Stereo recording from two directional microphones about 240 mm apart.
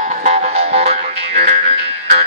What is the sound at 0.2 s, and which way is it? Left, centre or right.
Music, right.